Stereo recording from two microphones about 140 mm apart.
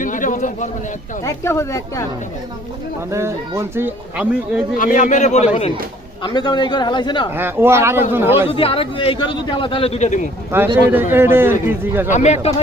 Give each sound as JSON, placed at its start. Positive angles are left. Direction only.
{"t": 0.0, "sound": "a sound", "side_deg": 70}
{"t": 1.2, "sound": "a woman's voice", "side_deg": 20}
{"t": 3.1, "sound": "speech", "side_deg": -20}
{"t": 4.8, "sound": "a man's voice", "side_deg": 65}
{"t": 6.2, "sound": "a man's voice", "side_deg": 30}
{"t": 7.3, "sound": "speech", "side_deg": -15}
{"t": 8.4, "sound": "a man's voice", "side_deg": 40}
{"t": 10.5, "sound": "speech", "side_deg": -15}
{"t": 12.1, "sound": "speech", "side_deg": 55}